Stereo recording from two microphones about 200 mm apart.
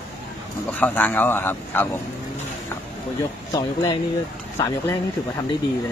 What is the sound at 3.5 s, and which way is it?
Speech, 20° left (ahead or behind).